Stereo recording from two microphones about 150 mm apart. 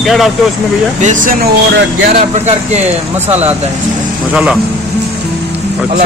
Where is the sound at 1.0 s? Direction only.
60° right (ahead or behind).